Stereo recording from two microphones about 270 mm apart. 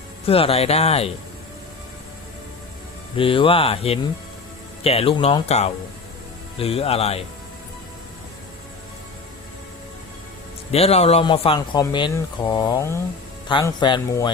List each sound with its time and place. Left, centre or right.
0.3 s speech: left
3.2 s speech: centre
10.7 s speech: left